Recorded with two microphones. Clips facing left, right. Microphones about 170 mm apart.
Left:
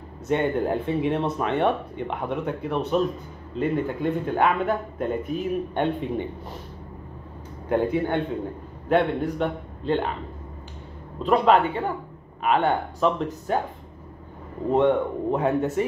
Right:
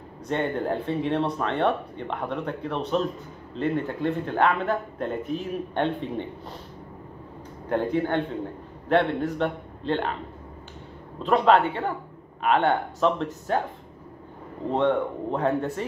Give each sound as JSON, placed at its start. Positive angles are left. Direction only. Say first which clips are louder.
{"t": 0.3, "sound": "speech", "louder": "left 3 dB", "side_deg": 10}
{"t": 7.7, "sound": "a man's voice", "louder": "left 1 dB", "side_deg": 10}
{"t": 11.2, "sound": "speech", "louder": "left 1 dB", "side_deg": 5}
{"t": 14.7, "sound": "speech", "louder": "left 3 dB", "side_deg": 5}